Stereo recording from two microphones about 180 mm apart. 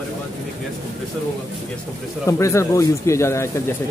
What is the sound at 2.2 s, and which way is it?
Speech, 15° left (ahead or behind).